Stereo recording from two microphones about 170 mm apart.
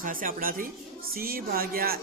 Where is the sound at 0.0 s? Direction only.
55° right (ahead or behind).